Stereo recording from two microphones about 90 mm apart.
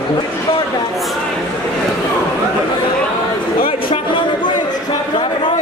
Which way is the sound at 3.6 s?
60° left (ahead or behind).